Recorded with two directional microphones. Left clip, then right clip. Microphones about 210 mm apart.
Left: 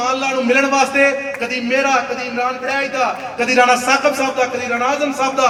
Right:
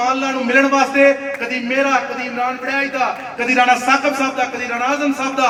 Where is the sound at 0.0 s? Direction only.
15° right (ahead or behind).